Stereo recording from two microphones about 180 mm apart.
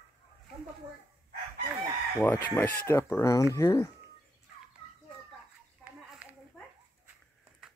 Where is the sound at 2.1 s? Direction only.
10° left (ahead or behind).